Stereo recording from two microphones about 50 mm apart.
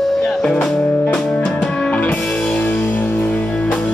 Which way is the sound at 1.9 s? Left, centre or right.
Left.